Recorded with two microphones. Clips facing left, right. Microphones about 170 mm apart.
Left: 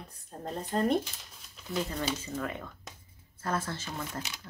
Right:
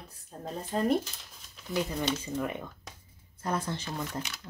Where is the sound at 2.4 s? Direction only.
15° right (ahead or behind).